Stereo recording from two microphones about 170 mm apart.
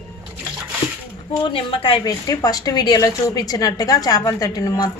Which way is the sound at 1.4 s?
30° left (ahead or behind).